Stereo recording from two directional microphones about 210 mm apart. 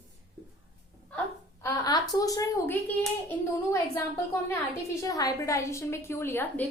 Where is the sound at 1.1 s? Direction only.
5° left (ahead or behind).